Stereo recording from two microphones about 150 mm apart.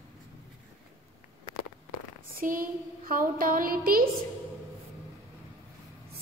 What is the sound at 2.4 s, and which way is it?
A woman's voice, 70° right (ahead or behind).